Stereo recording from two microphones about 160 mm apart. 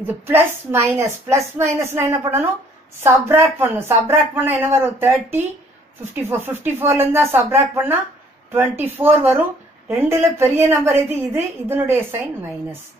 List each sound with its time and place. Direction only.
0.0 s a woman's voice: 15° right (ahead or behind)